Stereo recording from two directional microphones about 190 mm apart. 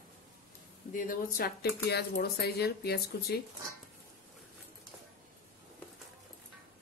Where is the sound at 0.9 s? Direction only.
50° left (ahead or behind).